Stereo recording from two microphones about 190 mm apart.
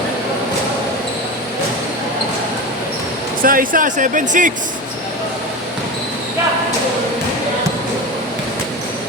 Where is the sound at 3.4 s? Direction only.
45° right (ahead or behind).